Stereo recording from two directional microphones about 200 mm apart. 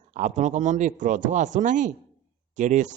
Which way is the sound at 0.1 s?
35° right (ahead or behind).